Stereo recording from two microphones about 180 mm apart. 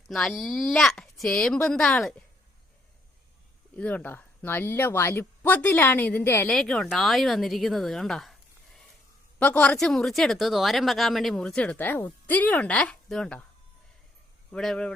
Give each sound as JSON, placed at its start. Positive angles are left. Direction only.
{"t": 0.1, "sound": "speech", "side_deg": 0}
{"t": 3.8, "sound": "speech", "side_deg": 10}
{"t": 6.5, "sound": "speech", "side_deg": 5}
{"t": 14.5, "sound": "speech", "side_deg": 5}